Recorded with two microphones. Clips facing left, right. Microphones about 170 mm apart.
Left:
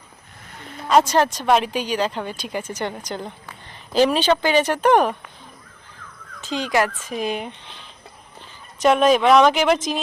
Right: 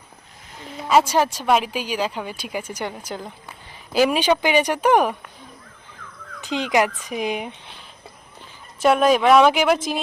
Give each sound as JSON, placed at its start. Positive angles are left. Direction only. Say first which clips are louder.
{"t": 0.8, "sound": "speech", "louder": "left 1 dB", "side_deg": -5}
{"t": 6.4, "sound": "speech", "louder": "right 1 dB", "side_deg": -20}